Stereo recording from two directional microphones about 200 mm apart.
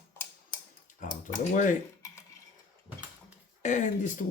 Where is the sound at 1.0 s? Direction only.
40° left (ahead or behind).